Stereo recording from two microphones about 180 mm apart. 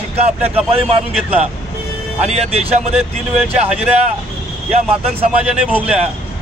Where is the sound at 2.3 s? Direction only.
35° right (ahead or behind).